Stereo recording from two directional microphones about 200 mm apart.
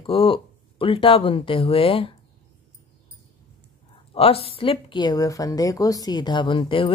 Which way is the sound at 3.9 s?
30° left (ahead or behind).